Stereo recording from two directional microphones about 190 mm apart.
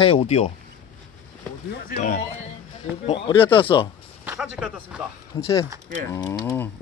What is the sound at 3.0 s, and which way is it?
Speech, 30° left (ahead or behind).